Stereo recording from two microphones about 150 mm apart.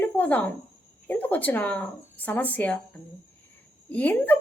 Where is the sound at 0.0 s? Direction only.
10° left (ahead or behind).